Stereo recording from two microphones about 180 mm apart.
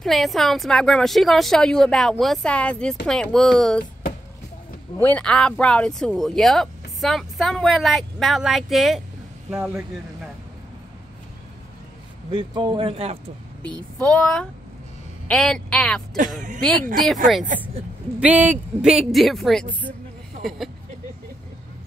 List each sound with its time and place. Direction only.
0.0 s speech: centre (ahead or behind)
4.9 s speech: 10° left (ahead or behind)
9.5 s speech: 10° right (ahead or behind)
12.3 s speech: 25° right (ahead or behind)
13.7 s speech: 5° left (ahead or behind)
17.3 s speech: centre (ahead or behind)